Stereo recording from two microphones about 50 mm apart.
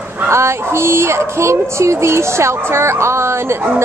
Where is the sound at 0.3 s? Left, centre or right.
Right.